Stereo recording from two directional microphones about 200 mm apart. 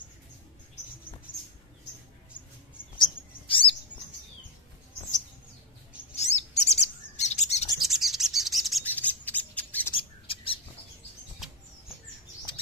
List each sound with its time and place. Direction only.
1.3 s rodents: 10° left (ahead or behind)
3.4 s bird: 25° left (ahead or behind)
6.1 s bird: 35° left (ahead or behind)
7.8 s bird: centre (ahead or behind)
9.9 s bird: 25° left (ahead or behind)